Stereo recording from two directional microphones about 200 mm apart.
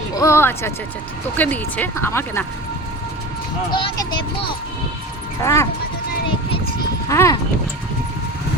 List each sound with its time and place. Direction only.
0.1 s speech: 15° left (ahead or behind)
3.7 s speech: 25° left (ahead or behind)
5.4 s speech: 15° left (ahead or behind)
7.1 s speech: 15° left (ahead or behind)